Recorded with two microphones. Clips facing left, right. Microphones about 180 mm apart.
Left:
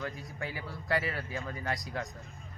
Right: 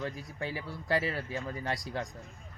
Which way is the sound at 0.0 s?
30° right (ahead or behind).